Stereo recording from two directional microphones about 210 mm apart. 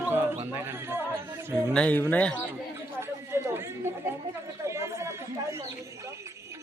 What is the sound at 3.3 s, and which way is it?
Speech, 10° right (ahead or behind).